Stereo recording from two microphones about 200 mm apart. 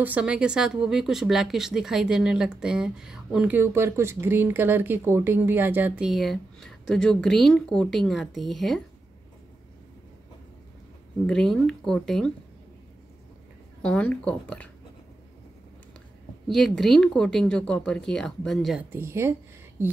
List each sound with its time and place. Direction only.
0.0 s speech: 5° right (ahead or behind)
11.2 s speech: 5° left (ahead or behind)
13.8 s speech: 5° left (ahead or behind)
16.4 s speech: centre (ahead or behind)